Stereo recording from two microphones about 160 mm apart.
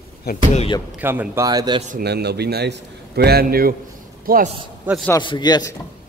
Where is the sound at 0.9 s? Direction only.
10° right (ahead or behind).